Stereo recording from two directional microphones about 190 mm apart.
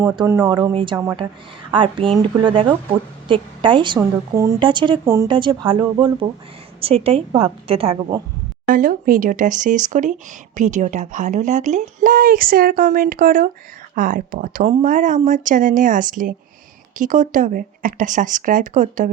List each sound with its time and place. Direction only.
0.0 s a woman's voice: 15° right (ahead or behind)
8.6 s speech: 45° right (ahead or behind)